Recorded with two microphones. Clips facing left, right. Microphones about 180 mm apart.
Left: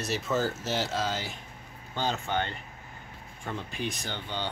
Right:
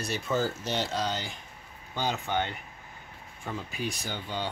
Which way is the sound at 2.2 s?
15° right (ahead or behind).